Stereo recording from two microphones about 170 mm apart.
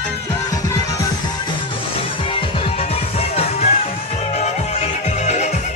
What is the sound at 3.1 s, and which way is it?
Music, 35° left (ahead or behind).